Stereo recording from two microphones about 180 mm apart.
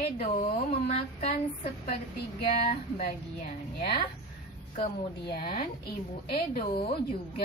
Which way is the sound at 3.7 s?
55° left (ahead or behind).